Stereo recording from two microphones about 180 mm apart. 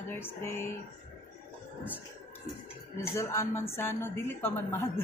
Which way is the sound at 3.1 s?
15° left (ahead or behind).